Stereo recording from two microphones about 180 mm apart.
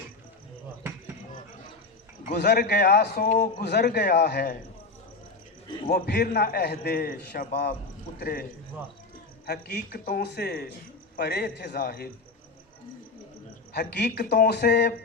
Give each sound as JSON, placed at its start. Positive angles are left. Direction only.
{"t": 2.3, "sound": "a man's voice", "side_deg": 65}
{"t": 5.9, "sound": "a man's voice", "side_deg": 65}
{"t": 9.5, "sound": "a man's voice", "side_deg": 60}
{"t": 13.7, "sound": "a man's voice", "side_deg": 65}